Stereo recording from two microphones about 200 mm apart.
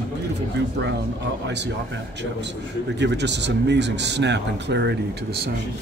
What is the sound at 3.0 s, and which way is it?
Speech, 60° right (ahead or behind).